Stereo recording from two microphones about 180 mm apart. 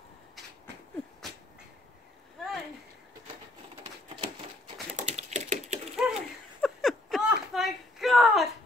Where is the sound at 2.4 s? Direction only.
Centre (ahead or behind).